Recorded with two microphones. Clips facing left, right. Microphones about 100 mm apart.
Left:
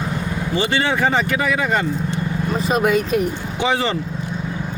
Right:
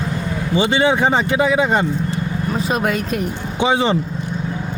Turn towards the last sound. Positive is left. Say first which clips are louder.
# right 3 dB
turn(degrees=-20)  # may be behind; listen again after turning